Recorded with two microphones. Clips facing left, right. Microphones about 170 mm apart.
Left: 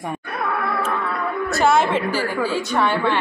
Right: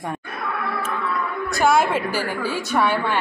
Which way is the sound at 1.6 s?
5° right (ahead or behind).